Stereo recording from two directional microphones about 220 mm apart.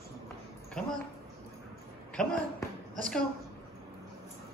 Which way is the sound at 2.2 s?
Centre (ahead or behind).